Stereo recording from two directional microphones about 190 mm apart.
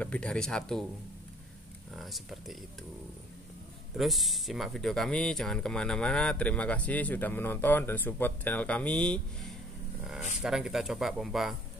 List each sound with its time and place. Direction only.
0.0 s speech: 5° left (ahead or behind)
2.0 s speech: centre (ahead or behind)
3.9 s speech: centre (ahead or behind)